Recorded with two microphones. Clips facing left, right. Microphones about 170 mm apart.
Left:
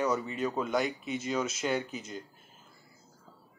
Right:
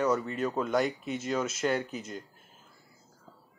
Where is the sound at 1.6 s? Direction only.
5° left (ahead or behind).